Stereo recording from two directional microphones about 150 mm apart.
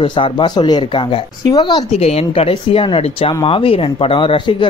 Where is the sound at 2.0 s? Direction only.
45° left (ahead or behind).